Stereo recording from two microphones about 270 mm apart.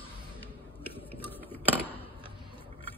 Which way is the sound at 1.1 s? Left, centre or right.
Centre.